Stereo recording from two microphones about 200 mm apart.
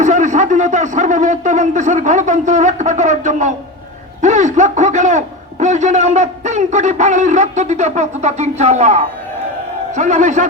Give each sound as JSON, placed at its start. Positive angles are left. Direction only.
{"t": 0.0, "sound": "a man's voice", "side_deg": -40}